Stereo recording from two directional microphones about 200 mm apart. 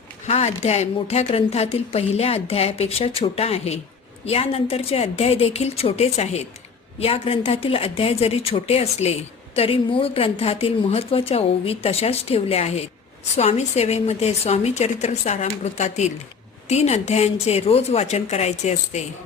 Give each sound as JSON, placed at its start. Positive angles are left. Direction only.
{"t": 0.3, "sound": "a woman's voice", "side_deg": 30}